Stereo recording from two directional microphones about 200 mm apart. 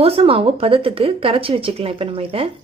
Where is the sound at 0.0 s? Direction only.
30° right (ahead or behind).